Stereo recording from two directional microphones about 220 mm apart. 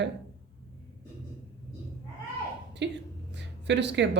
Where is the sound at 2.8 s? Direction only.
55° right (ahead or behind).